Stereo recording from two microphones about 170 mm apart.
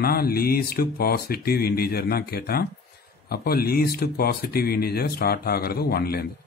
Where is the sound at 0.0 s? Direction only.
60° left (ahead or behind).